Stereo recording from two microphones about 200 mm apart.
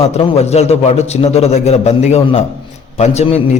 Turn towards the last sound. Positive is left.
turn(degrees=35)  # may be behind; listen again after turning